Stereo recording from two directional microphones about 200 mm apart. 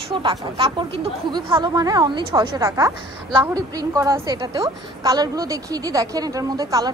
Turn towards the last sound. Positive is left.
turn(degrees=-15)  # may be behind; listen again after turning